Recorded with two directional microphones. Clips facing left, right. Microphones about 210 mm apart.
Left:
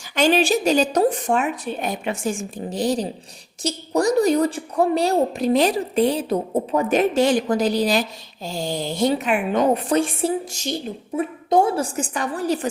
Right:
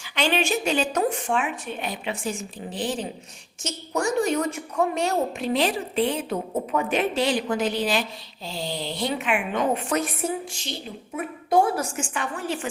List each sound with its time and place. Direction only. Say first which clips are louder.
0.2 s a woman's voice: left 6 dB; 40° left (ahead or behind)
10.5 s a woman's voice: left 8 dB; 45° left (ahead or behind)
11.2 s a woman's voice: left 3 dB; 25° left (ahead or behind)